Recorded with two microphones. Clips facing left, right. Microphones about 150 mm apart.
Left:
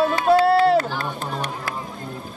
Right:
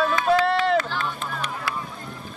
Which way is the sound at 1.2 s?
35° left (ahead or behind).